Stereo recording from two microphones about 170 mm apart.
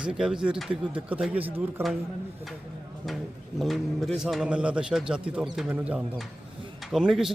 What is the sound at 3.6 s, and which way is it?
Speech, centre (ahead or behind).